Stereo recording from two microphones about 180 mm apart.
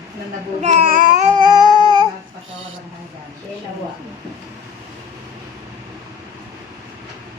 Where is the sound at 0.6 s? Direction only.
40° right (ahead or behind).